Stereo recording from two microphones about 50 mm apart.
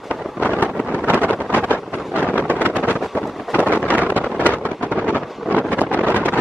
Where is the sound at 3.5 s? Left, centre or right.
Left.